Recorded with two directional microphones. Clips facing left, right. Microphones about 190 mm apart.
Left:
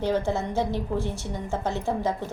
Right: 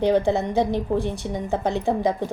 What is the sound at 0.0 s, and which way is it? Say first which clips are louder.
A woman's voice: right 6 dB; 15° right (ahead or behind).